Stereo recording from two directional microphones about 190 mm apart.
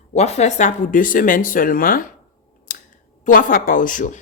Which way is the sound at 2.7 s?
50° left (ahead or behind).